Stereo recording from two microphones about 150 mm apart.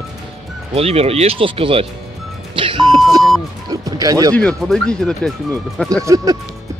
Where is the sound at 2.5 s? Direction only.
35° right (ahead or behind).